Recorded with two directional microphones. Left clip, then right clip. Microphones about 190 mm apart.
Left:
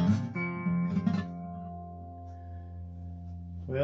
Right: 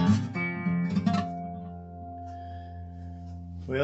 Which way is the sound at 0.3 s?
30° right (ahead or behind).